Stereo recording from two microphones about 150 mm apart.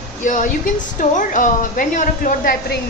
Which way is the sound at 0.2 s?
60° left (ahead or behind).